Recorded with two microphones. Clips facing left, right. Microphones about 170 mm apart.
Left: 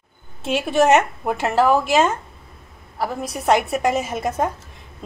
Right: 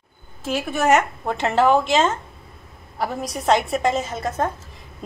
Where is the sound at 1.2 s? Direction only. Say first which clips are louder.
Even; 10° left (ahead or behind).